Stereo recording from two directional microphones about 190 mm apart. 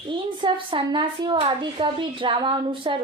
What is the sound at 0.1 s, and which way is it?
A woman's voice, 25° right (ahead or behind).